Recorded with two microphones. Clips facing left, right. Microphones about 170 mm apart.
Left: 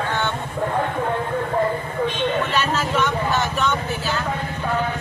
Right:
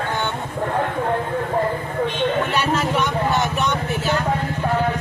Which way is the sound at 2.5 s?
10° right (ahead or behind).